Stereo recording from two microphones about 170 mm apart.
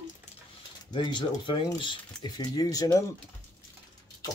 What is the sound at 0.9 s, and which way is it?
Speech, 30° left (ahead or behind).